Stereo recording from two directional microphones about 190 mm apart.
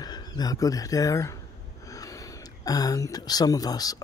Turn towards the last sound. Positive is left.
turn(degrees=20)  # may be behind; listen again after turning